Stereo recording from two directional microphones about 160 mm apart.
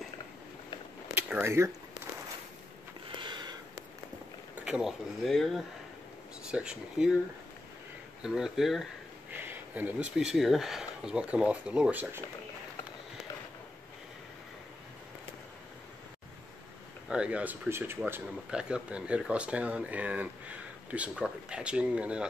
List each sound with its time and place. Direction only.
1.1 s a sound: 15° right (ahead or behind)
3.2 s a sound: 30° right (ahead or behind)
4.6 s speech: 5° right (ahead or behind)
8.2 s speech: 5° right (ahead or behind)
9.3 s speech: 10° right (ahead or behind)
17.1 s speech: 5° right (ahead or behind)